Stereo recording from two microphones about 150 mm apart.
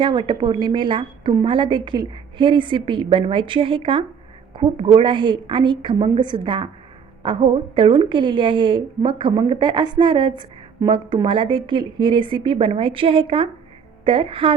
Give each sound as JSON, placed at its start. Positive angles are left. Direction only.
{"t": 0.0, "sound": "a woman's voice", "side_deg": -30}